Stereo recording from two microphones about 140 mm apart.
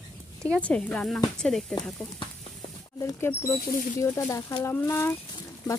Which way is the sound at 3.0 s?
20° left (ahead or behind).